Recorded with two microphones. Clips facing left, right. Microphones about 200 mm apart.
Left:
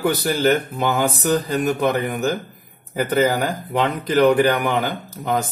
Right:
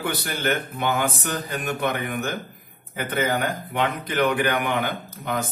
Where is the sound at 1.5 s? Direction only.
35° left (ahead or behind).